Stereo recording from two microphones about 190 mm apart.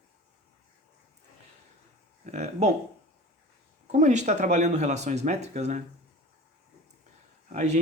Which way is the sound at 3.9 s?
40° right (ahead or behind).